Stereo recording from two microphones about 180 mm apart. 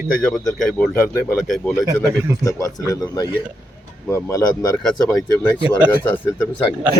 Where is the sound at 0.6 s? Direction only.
5° left (ahead or behind).